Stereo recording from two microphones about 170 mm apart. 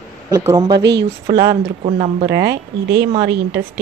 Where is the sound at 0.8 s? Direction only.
90° right.